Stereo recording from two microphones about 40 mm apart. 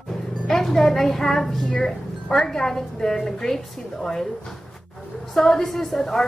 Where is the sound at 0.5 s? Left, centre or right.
Centre.